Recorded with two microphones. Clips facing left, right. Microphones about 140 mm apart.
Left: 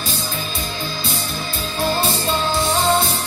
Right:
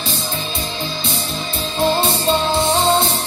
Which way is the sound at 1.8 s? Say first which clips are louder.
Right 4 dB; 25° right (ahead or behind).